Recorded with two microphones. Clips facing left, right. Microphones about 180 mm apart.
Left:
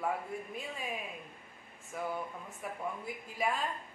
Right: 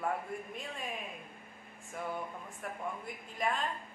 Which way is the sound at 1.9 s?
Centre (ahead or behind).